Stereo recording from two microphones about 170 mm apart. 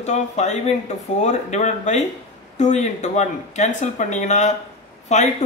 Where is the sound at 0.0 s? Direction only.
40° left (ahead or behind).